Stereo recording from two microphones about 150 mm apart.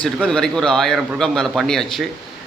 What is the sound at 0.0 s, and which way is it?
A man's voice, 5° left (ahead or behind).